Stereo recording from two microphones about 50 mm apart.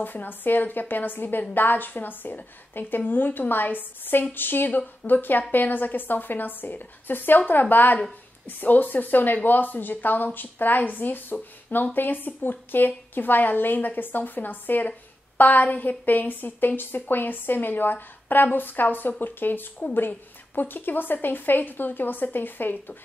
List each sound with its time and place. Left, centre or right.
0.0 s speech: left